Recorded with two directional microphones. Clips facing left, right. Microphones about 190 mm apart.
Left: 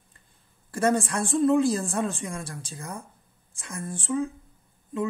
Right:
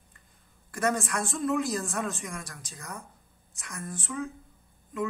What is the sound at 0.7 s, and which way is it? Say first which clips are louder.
A woman's voice: left 5 dB; 30° left (ahead or behind).